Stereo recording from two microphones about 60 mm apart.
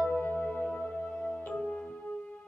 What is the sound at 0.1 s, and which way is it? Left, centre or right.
Music, left.